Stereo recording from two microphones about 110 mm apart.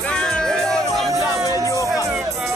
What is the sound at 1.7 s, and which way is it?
Music, 30° left (ahead or behind).